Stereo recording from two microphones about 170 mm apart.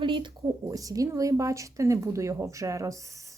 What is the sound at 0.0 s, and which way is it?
Speech, 30° right (ahead or behind).